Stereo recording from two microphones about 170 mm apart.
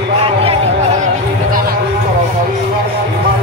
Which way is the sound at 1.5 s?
55° right (ahead or behind).